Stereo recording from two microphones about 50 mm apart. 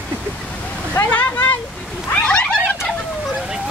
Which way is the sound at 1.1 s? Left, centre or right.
Left.